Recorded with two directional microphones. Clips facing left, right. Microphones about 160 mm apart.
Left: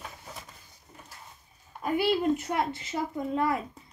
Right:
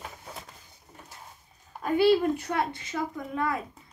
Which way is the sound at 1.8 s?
20° left (ahead or behind).